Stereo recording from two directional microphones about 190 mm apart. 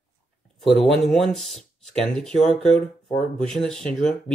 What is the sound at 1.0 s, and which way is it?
Speech, centre (ahead or behind).